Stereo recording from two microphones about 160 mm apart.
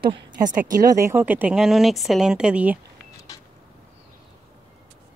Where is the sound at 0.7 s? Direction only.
20° right (ahead or behind).